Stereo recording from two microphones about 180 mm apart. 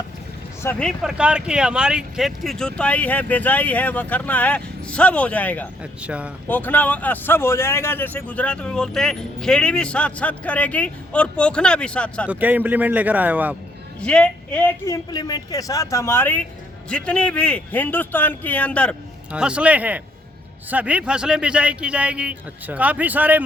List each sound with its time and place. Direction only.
0.6 s a man's voice: 5° left (ahead or behind)
5.8 s a man's voice: 5° right (ahead or behind)
6.5 s a man's voice: 10° left (ahead or behind)
12.3 s a man's voice: 10° right (ahead or behind)
14.0 s speech: 5° left (ahead or behind)
14.8 s a man's voice: 20° left (ahead or behind)
19.3 s a man's voice: 5° right (ahead or behind)